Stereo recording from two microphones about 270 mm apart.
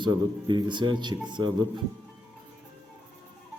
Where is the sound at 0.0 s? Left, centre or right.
Centre.